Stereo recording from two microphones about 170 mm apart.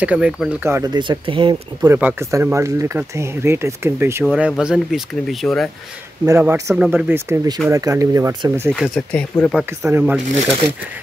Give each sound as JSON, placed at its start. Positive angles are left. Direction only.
{"t": 0.0, "sound": "speech", "side_deg": -5}
{"t": 0.9, "sound": "speech", "side_deg": -25}
{"t": 1.8, "sound": "speech", "side_deg": -10}
{"t": 4.3, "sound": "speech", "side_deg": 0}
{"t": 6.2, "sound": "speech", "side_deg": -15}
{"t": 8.7, "sound": "speech", "side_deg": 0}
{"t": 9.8, "sound": "speech", "side_deg": -10}